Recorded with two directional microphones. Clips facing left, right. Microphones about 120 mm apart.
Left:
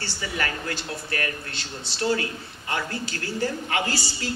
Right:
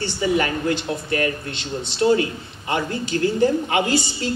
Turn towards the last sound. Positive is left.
turn(degrees=-20)  # may be behind; listen again after turning